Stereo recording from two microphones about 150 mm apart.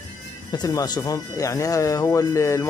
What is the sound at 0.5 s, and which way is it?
Speech, 25° left (ahead or behind).